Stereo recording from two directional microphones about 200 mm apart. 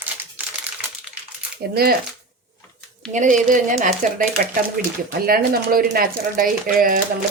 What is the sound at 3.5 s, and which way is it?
Speech, 40° right (ahead or behind).